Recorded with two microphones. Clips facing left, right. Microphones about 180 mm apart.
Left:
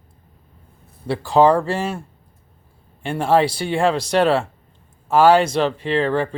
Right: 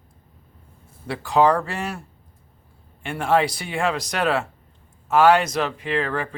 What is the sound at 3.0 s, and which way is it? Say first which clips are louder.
Speech: left 3 dB; 30° left (ahead or behind).